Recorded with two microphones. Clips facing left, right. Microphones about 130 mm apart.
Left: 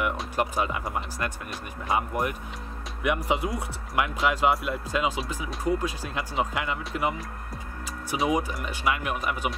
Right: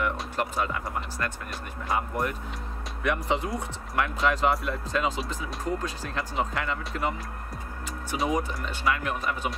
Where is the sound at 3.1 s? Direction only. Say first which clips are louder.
Left 1 dB; 10° left (ahead or behind).